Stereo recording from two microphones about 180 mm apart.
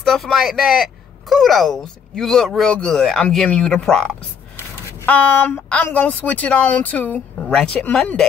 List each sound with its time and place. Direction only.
0.0 s speech: centre (ahead or behind)